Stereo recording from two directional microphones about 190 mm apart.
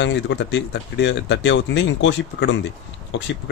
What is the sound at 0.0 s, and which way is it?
Speech, 65° left (ahead or behind).